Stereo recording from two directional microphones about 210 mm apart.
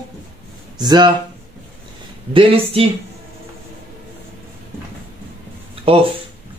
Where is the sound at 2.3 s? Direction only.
25° right (ahead or behind).